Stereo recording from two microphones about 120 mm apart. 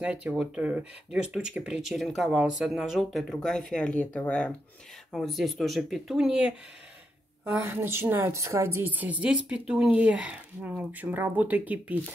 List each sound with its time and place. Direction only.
0.0 s a woman's voice: 10° right (ahead or behind); by 4.6 s 10° left (ahead or behind)
5.1 s a woman's voice: centre (ahead or behind)